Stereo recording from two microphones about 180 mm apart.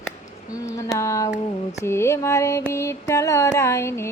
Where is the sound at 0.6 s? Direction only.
15° left (ahead or behind).